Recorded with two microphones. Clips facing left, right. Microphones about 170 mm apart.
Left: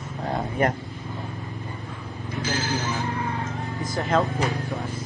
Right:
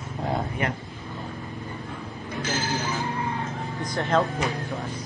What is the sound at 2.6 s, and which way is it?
Speech, centre (ahead or behind).